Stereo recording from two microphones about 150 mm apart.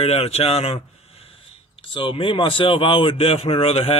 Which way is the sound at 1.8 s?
35° left (ahead or behind).